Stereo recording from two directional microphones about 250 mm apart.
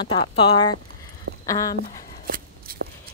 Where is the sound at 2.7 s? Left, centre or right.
Right.